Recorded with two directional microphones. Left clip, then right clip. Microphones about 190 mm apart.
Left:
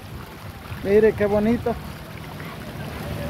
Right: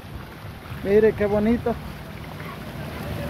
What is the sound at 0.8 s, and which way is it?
Speech, 10° left (ahead or behind).